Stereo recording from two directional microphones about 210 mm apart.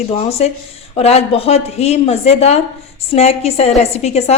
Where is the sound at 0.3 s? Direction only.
30° left (ahead or behind).